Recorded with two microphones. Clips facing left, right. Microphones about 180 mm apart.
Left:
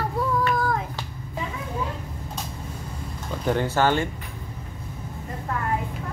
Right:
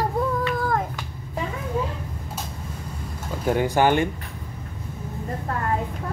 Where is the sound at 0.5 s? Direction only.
55° right (ahead or behind).